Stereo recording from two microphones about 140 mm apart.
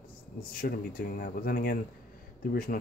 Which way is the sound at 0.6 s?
90° left.